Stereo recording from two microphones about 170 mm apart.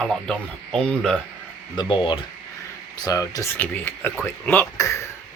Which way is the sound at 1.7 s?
25° left (ahead or behind).